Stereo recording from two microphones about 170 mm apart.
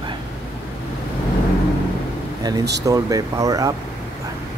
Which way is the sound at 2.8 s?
20° right (ahead or behind).